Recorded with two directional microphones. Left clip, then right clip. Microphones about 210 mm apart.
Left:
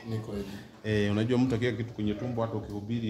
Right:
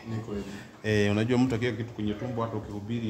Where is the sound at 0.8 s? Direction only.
30° right (ahead or behind); by 1.8 s 5° right (ahead or behind).